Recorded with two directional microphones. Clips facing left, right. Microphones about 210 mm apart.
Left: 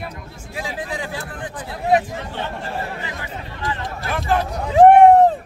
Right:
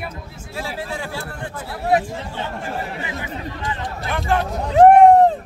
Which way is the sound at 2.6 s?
20° right (ahead or behind).